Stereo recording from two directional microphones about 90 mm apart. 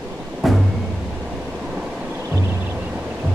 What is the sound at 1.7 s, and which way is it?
Vehicle, 10° right (ahead or behind).